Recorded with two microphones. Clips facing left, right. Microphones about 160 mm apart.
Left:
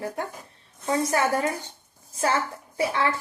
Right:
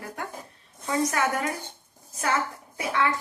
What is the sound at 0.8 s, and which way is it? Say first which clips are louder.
Speech: left 2 dB; 30° left (ahead or behind).